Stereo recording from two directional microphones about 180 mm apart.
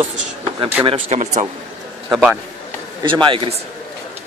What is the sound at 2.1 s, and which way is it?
Speech, 5° right (ahead or behind).